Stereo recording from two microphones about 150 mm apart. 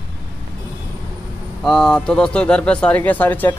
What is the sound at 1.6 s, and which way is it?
Speech, centre (ahead or behind).